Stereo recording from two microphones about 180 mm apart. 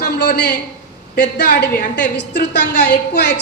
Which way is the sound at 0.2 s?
65° left (ahead or behind).